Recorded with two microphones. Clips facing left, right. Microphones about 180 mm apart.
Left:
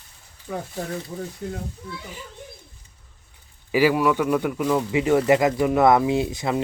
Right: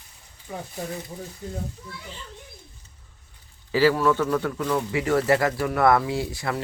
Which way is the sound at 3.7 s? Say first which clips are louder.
Left 1 dB; 15° left (ahead or behind).